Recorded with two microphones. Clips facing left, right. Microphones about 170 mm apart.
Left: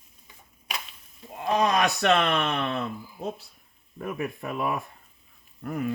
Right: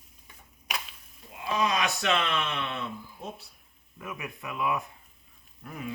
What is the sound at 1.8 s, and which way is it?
Speech, 40° left (ahead or behind).